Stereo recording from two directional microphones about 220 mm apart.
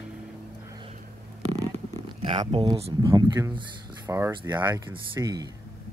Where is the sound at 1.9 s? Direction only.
25° right (ahead or behind).